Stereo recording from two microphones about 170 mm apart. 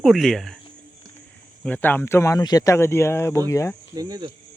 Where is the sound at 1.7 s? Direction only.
10° left (ahead or behind).